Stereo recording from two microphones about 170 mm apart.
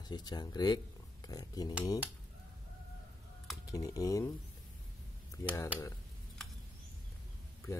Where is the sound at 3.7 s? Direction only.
20° left (ahead or behind).